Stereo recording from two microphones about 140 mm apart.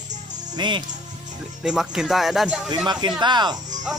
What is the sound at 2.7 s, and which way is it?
Speech, 30° right (ahead or behind).